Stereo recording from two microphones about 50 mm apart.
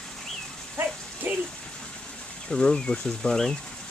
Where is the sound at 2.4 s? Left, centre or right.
Centre.